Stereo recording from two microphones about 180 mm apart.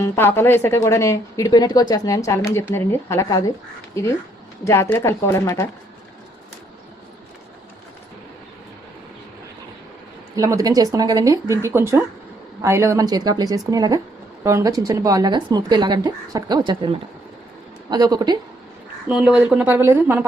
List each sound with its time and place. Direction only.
0.0 s a woman's voice: 15° left (ahead or behind)
4.6 s a woman's voice: 15° left (ahead or behind)
10.3 s speech: 20° right (ahead or behind)
19.0 s speech: 5° right (ahead or behind)